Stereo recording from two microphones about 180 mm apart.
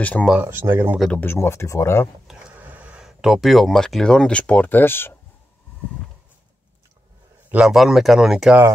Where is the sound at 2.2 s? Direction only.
10° right (ahead or behind); by 5.1 s 10° left (ahead or behind).